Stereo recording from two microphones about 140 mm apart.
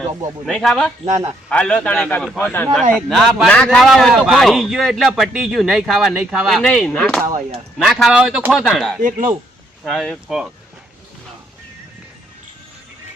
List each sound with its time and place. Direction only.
0.4 s a man's voice: centre (ahead or behind)
3.1 s a man's voice: 5° right (ahead or behind)
9.0 s speech: 70° right (ahead or behind)
9.8 s a man's voice: centre (ahead or behind)